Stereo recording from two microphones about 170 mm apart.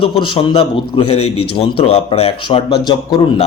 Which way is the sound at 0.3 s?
30° left (ahead or behind).